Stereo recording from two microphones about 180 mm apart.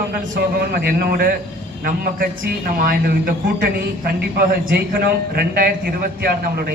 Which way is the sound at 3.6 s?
60° right (ahead or behind).